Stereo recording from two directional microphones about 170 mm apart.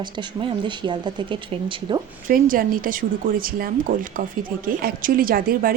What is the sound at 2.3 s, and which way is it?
A woman's voice, 55° right (ahead or behind).